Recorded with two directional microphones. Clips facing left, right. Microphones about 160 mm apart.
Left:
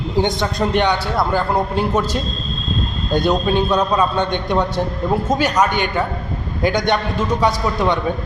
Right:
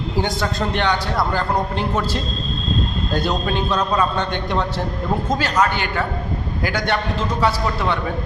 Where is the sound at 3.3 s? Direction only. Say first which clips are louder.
Left 7 dB; 15° left (ahead or behind).